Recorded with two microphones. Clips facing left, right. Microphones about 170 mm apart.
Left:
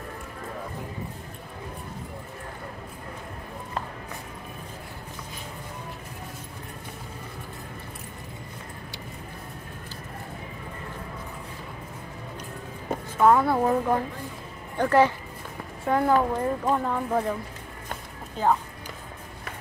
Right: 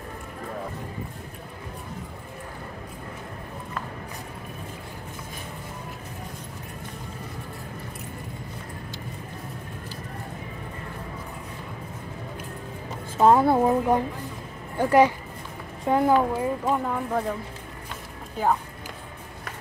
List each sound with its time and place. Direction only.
13.2 s a woman's voice: 25° right (ahead or behind); by 17.3 s centre (ahead or behind)
18.4 s speech: 10° right (ahead or behind)